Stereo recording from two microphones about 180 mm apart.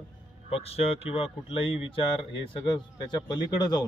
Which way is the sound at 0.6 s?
35° left (ahead or behind).